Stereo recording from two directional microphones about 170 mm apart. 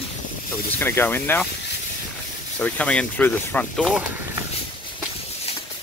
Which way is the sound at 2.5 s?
10° left (ahead or behind).